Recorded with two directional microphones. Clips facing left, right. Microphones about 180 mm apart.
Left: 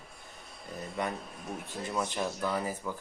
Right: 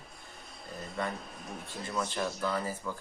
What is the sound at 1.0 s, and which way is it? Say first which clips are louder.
A man's voice: left 1 dB; 15° left (ahead or behind).